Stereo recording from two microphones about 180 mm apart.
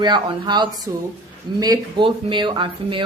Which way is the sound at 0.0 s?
25° right (ahead or behind).